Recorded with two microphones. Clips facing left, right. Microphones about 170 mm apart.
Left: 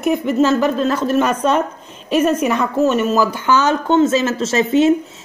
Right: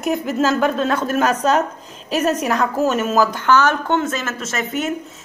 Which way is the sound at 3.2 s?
10° left (ahead or behind).